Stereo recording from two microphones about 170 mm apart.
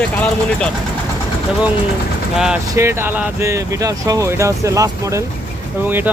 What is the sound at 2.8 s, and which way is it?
Speech, 15° right (ahead or behind).